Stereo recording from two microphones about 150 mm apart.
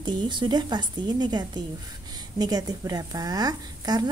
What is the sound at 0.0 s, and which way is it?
A woman's voice, 30° right (ahead or behind).